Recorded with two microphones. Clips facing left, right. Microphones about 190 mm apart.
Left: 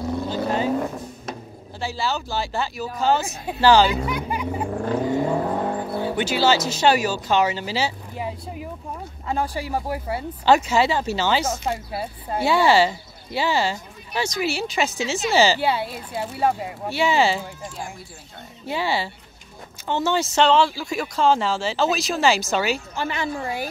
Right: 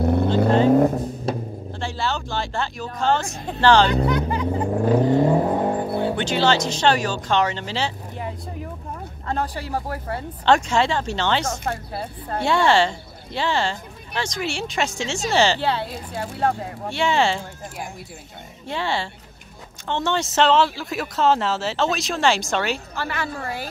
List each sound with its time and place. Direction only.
0.0 s vehicle: 60° right (ahead or behind)
0.7 s vehicle: 40° right (ahead or behind)
1.8 s speech: 5° left (ahead or behind)
5.6 s music: 25° right (ahead or behind)
6.1 s speech: 5° left (ahead or behind)
18.7 s speech: 5° left (ahead or behind)
22.9 s speech: 15° left (ahead or behind)